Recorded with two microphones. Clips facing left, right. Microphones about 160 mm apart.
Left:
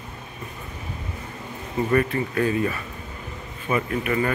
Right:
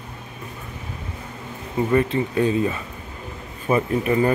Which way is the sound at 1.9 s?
20° right (ahead or behind).